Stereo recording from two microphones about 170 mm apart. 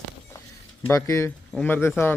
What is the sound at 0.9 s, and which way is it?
Speech, 15° left (ahead or behind).